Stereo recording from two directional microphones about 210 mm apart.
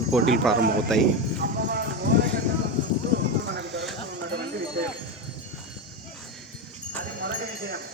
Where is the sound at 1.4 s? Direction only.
50° right (ahead or behind).